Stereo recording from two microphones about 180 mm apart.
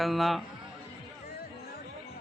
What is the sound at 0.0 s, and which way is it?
Speech, centre (ahead or behind).